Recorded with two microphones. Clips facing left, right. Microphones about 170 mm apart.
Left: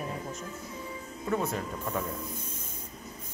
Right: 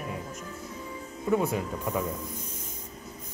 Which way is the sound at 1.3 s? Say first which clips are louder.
Right 4 dB; 10° right (ahead or behind).